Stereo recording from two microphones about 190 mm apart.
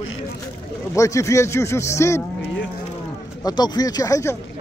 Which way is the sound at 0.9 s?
15° left (ahead or behind).